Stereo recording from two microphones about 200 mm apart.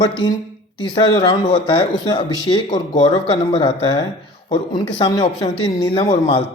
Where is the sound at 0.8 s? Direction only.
25° left (ahead or behind).